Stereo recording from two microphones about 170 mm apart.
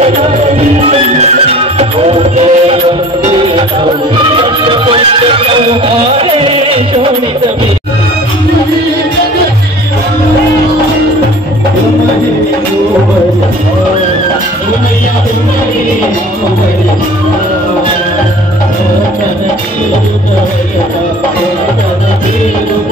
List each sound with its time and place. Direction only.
0.6 s music: 40° right (ahead or behind)
4.4 s music: 30° right (ahead or behind)